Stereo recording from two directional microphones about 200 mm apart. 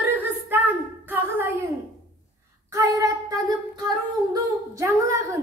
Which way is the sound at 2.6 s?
15° right (ahead or behind).